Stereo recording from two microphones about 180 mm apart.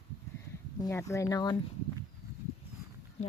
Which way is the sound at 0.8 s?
15° left (ahead or behind).